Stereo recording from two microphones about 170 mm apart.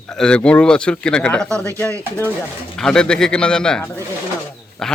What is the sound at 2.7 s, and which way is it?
Speech, 5° left (ahead or behind).